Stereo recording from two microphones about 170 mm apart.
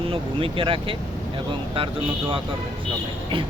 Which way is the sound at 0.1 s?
30° right (ahead or behind).